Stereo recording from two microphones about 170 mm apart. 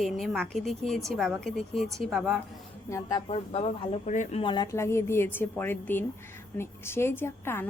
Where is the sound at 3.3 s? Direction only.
35° left (ahead or behind).